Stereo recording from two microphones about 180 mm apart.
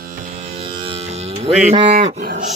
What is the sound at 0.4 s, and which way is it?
Music, 30° right (ahead or behind).